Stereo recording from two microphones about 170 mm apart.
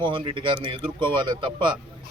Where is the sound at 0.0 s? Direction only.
30° right (ahead or behind).